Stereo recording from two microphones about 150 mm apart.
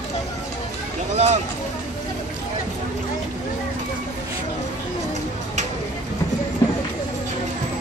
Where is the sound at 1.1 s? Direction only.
45° right (ahead or behind).